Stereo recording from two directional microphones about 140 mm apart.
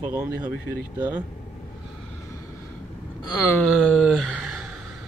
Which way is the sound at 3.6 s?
Centre (ahead or behind).